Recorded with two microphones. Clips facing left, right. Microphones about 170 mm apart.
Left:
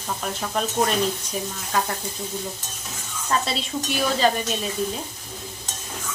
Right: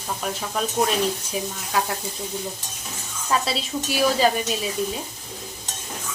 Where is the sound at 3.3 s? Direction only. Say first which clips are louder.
Right 1 dB; 5° right (ahead or behind).